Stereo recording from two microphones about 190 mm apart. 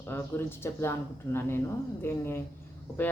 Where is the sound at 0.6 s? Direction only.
15° left (ahead or behind).